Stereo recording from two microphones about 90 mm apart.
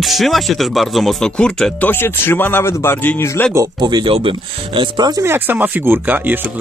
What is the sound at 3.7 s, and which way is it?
Speech, 55° right (ahead or behind).